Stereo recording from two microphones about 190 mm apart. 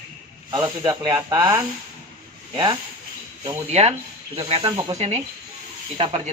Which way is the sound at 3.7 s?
35° right (ahead or behind).